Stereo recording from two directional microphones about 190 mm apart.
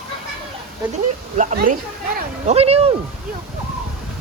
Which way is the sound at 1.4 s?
45° right (ahead or behind).